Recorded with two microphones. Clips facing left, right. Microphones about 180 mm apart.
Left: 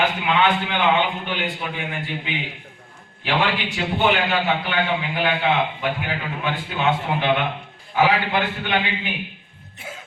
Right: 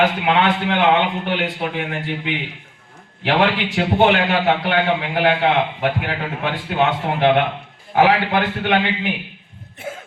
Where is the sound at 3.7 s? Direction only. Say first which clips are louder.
Right 5 dB; 60° right (ahead or behind).